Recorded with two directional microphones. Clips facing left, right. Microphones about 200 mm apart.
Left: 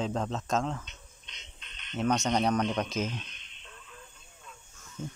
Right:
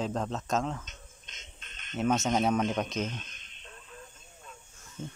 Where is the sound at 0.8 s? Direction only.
45° right (ahead or behind).